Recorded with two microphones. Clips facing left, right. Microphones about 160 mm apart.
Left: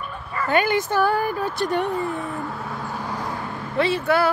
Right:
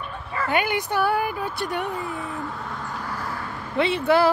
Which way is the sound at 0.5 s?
15° right (ahead or behind).